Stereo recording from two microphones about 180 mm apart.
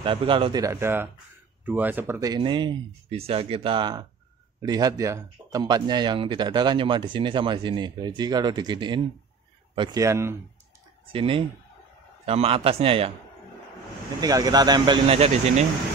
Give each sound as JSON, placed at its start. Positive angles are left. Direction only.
{"t": 0.0, "sound": "speech", "side_deg": -30}
{"t": 11.1, "sound": "a man's voice", "side_deg": -30}
{"t": 14.2, "sound": "speech", "side_deg": -20}